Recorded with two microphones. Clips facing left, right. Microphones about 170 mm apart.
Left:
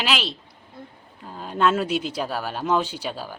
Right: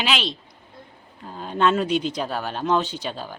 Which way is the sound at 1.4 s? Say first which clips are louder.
Right 1 dB; 5° left (ahead or behind).